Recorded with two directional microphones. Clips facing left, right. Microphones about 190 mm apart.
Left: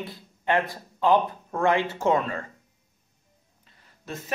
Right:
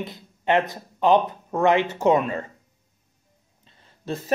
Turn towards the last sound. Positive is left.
turn(degrees=-35)  # may be behind; listen again after turning